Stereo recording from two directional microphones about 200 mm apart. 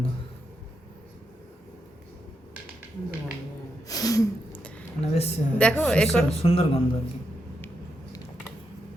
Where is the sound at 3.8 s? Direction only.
15° left (ahead or behind).